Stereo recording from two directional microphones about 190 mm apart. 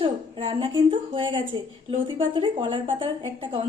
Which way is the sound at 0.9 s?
30° right (ahead or behind).